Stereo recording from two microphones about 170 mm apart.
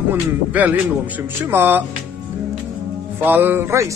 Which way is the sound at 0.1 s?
10° right (ahead or behind).